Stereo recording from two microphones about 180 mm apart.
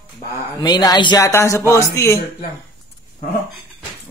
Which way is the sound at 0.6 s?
20° left (ahead or behind).